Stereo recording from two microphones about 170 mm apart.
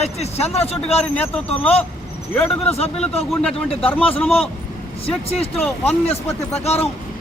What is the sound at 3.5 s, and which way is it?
Speech, 35° left (ahead or behind).